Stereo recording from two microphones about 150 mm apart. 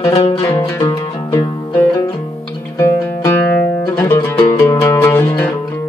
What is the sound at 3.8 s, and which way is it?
Music, 15° left (ahead or behind).